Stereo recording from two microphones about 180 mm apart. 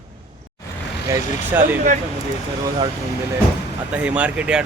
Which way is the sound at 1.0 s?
15° right (ahead or behind).